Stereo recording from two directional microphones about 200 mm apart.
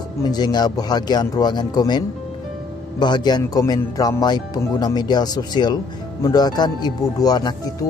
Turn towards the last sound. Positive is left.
turn(degrees=20)  # may be behind; listen again after turning